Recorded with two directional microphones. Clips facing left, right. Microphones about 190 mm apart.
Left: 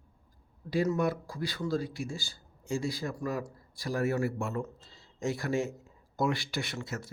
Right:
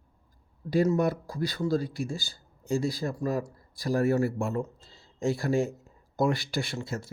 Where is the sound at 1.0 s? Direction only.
40° right (ahead or behind).